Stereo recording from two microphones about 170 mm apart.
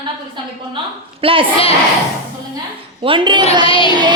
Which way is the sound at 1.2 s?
30° right (ahead or behind).